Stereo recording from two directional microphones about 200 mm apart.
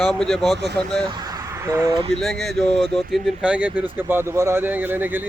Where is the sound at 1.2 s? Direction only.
15° right (ahead or behind).